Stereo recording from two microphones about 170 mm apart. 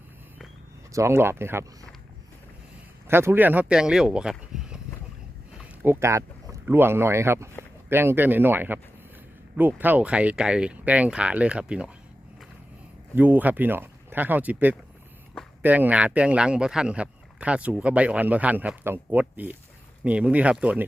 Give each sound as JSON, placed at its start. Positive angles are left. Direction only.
{"t": 0.9, "sound": "speech", "side_deg": -15}
{"t": 3.1, "sound": "speech", "side_deg": -15}
{"t": 5.8, "sound": "speech", "side_deg": -15}
{"t": 13.1, "sound": "speech", "side_deg": -10}